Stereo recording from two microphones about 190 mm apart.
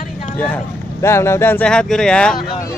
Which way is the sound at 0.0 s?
35° left (ahead or behind).